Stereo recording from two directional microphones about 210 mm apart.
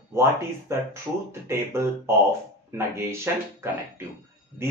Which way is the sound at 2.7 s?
10° right (ahead or behind).